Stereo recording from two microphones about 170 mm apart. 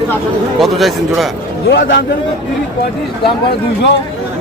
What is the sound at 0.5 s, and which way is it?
Speech, centre (ahead or behind).